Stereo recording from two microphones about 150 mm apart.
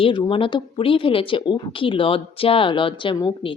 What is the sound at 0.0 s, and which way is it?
Speech, 35° left (ahead or behind).